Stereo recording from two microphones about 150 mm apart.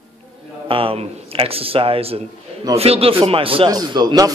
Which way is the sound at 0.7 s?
35° right (ahead or behind).